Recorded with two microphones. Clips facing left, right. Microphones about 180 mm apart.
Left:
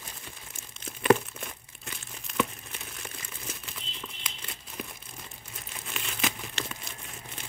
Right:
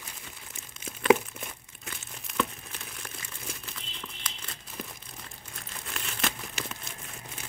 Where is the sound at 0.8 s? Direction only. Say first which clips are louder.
Even; 5° right (ahead or behind).